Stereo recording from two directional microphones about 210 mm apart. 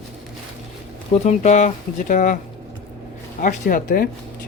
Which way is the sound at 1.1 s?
30° left (ahead or behind).